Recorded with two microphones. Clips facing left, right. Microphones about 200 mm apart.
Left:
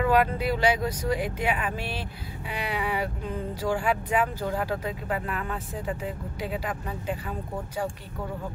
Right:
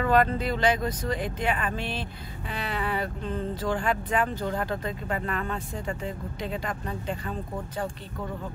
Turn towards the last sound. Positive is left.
turn(degrees=10)  # may be behind; listen again after turning